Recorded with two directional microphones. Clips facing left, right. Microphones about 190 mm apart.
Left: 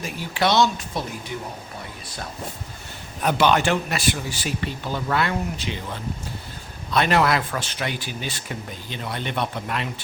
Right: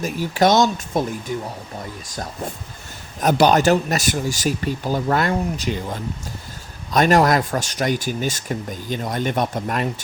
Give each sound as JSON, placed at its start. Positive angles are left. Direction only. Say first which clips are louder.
{"t": 0.0, "sound": "speech", "louder": "right 6 dB", "side_deg": -45}
{"t": 3.2, "sound": "speech", "louder": "right 4 dB", "side_deg": -40}